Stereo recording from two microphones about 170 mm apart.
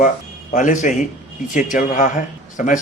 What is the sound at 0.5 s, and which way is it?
A man's voice, 45° left (ahead or behind).